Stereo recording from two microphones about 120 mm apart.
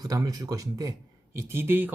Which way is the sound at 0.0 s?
30° right (ahead or behind).